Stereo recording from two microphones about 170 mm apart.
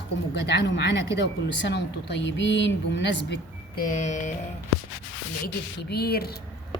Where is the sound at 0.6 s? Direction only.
80° left.